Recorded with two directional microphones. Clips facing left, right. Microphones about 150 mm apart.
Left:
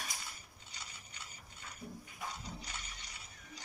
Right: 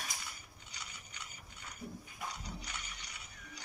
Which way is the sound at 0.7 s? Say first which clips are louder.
Right 1 dB; 30° left (ahead or behind).